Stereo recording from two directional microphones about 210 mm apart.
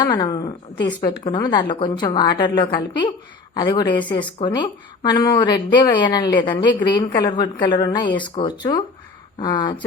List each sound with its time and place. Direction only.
0.0 s a woman's voice: 20° left (ahead or behind)